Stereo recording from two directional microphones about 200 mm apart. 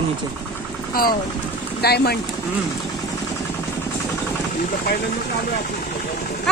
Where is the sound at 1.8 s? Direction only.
55° left (ahead or behind).